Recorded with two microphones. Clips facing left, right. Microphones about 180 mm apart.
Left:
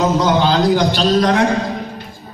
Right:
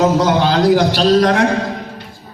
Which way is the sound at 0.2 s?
65° right (ahead or behind).